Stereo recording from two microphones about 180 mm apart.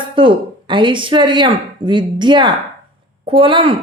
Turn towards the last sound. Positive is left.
turn(degrees=-30)  # may be behind; listen again after turning